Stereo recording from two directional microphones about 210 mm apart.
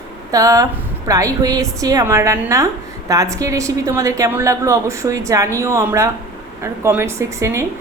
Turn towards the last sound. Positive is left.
turn(degrees=-15)  # may be behind; listen again after turning